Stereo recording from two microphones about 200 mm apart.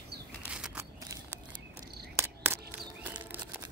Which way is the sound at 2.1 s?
10° right (ahead or behind).